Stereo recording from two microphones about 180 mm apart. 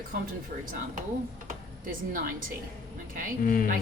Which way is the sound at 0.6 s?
50° right (ahead or behind).